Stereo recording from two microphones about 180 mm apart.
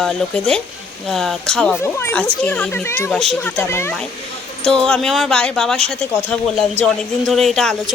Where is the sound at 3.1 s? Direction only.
Centre (ahead or behind).